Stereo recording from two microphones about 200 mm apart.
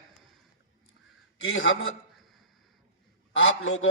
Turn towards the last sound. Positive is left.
turn(degrees=90)